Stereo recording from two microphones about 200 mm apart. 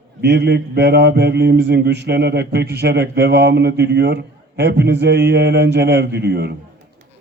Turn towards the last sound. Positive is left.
turn(degrees=-55)  # may be behind; listen again after turning